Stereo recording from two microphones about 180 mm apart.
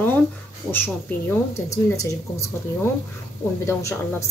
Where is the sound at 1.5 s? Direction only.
20° left (ahead or behind).